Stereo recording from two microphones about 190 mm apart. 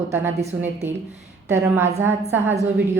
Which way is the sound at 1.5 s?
10° right (ahead or behind).